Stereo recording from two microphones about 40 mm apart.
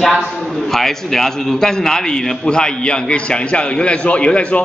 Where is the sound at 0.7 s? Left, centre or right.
Centre.